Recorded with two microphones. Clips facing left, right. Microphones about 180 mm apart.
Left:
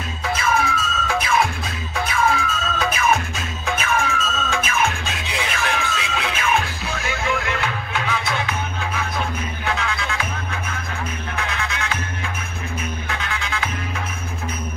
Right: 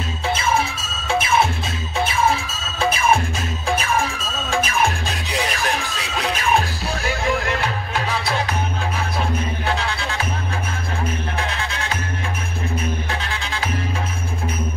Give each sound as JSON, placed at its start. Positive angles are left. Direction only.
{"t": 0.3, "sound": "music", "side_deg": -25}
{"t": 11.3, "sound": "music", "side_deg": -30}
{"t": 13.1, "sound": "music", "side_deg": -35}